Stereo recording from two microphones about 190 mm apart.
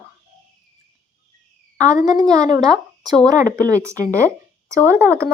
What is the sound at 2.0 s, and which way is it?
A woman's voice, 20° right (ahead or behind).